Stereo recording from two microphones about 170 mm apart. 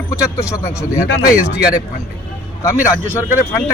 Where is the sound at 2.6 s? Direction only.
15° left (ahead or behind).